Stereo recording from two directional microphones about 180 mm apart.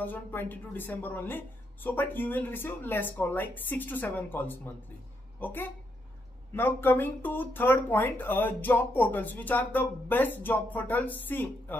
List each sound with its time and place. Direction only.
0.0 s speech: 10° left (ahead or behind)